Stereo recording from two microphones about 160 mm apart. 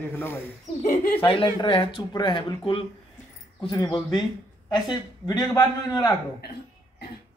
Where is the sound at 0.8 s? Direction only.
60° left (ahead or behind).